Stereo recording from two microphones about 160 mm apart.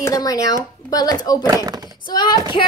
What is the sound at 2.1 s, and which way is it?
Speech, 25° left (ahead or behind).